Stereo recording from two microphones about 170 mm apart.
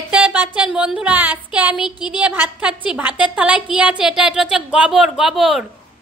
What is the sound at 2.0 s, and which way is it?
A woman's voice, 10° right (ahead or behind).